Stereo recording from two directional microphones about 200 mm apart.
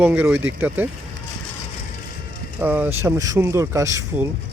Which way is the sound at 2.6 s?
10° right (ahead or behind).